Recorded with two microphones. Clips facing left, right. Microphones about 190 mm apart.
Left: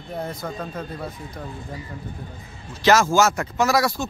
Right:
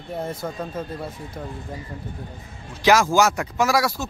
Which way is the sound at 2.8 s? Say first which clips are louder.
Even; 15° right (ahead or behind).